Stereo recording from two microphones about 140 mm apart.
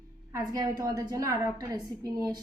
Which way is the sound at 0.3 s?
25° right (ahead or behind).